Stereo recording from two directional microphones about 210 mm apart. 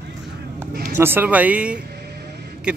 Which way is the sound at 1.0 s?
10° right (ahead or behind).